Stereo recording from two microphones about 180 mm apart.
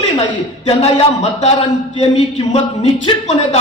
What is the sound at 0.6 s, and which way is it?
Speech, 35° left (ahead or behind).